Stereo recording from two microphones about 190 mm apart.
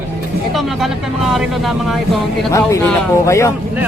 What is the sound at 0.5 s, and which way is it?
Speech, centre (ahead or behind).